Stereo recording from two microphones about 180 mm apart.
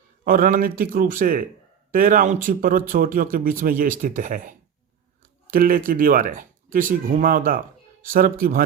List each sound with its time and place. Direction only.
0.3 s speech: 50° right (ahead or behind)